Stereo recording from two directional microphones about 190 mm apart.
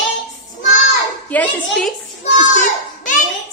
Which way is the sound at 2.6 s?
40° left (ahead or behind).